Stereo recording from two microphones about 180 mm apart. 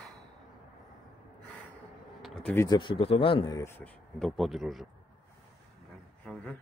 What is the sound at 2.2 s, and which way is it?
Speech, 5° left (ahead or behind).